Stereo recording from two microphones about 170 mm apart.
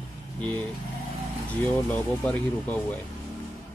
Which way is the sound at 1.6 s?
10° left (ahead or behind).